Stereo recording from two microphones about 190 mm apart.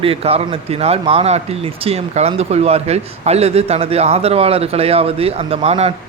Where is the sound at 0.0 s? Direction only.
30° right (ahead or behind).